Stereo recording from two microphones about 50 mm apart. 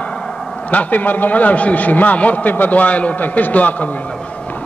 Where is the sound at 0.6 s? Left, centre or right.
Left.